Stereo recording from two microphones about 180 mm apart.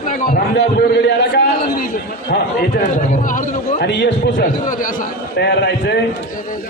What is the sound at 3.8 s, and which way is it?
Speech, 70° left (ahead or behind).